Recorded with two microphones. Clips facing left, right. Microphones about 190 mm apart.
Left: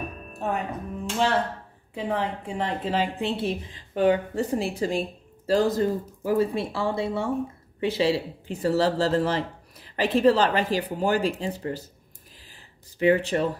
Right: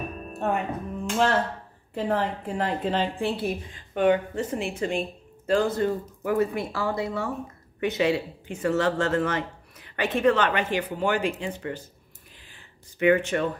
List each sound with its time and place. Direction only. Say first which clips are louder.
0.4 s a woman's voice: right 2 dB; centre (ahead or behind)
3.2 s speech: even; 25° left (ahead or behind)
12.4 s a sound: left 1 dB; 35° left (ahead or behind)